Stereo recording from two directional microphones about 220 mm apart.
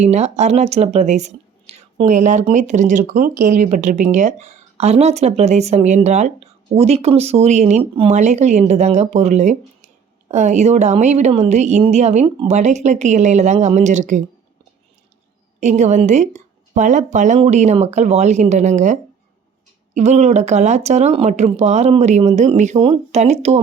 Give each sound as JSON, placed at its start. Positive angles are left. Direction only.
{"t": 0.0, "sound": "a woman's voice", "side_deg": -30}
{"t": 15.6, "sound": "a woman's voice", "side_deg": -30}